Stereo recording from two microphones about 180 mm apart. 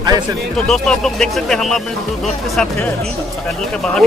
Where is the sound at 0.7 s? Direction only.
5° left (ahead or behind).